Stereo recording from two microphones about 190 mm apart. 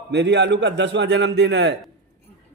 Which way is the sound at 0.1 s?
65° right (ahead or behind).